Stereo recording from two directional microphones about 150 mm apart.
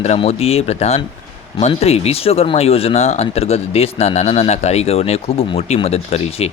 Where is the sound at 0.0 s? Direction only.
45° left (ahead or behind).